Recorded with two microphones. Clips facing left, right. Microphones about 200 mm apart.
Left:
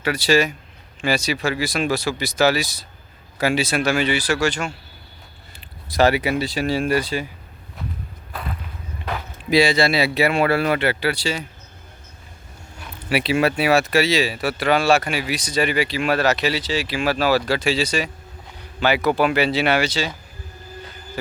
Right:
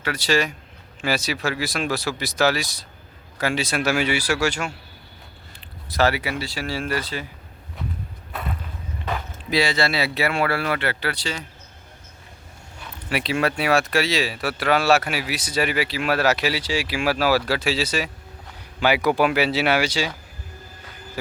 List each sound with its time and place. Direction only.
0.0 s speech: 10° left (ahead or behind)
3.8 s speech: 10° right (ahead or behind)
5.5 s speech: 15° left (ahead or behind)
8.3 s a sound: centre (ahead or behind)
9.5 s speech: 15° left (ahead or behind)
13.1 s speech: 5° left (ahead or behind); by 20.1 s 10° right (ahead or behind)